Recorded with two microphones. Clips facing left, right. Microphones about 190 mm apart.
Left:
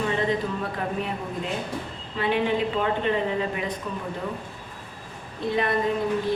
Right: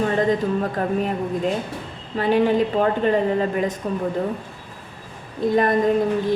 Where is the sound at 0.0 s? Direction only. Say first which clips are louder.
Right 5 dB; 45° right (ahead or behind).